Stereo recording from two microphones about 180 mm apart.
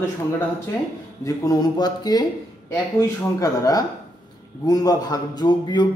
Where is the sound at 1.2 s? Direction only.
20° left (ahead or behind).